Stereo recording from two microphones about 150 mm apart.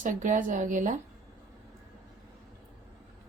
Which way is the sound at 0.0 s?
60° right (ahead or behind).